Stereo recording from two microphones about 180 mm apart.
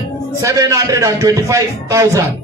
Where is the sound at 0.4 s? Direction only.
15° right (ahead or behind).